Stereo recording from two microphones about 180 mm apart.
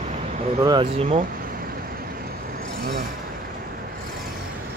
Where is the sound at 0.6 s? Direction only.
25° right (ahead or behind).